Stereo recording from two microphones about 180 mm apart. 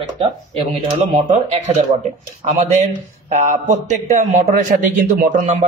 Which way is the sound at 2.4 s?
40° right (ahead or behind).